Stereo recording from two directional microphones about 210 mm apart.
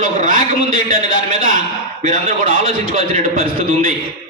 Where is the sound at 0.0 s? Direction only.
40° right (ahead or behind).